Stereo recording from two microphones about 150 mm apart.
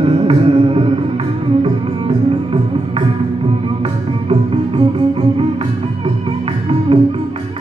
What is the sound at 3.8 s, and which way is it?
Music, 40° right (ahead or behind).